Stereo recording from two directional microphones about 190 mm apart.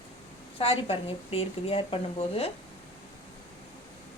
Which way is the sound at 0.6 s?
30° left (ahead or behind).